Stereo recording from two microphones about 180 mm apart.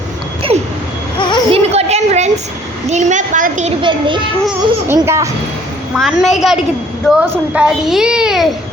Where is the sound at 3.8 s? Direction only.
25° right (ahead or behind).